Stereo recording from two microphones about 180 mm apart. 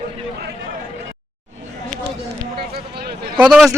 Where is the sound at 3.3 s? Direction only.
Centre (ahead or behind).